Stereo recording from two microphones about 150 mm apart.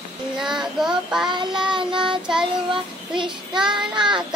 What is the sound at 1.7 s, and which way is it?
Child singing, 35° right (ahead or behind).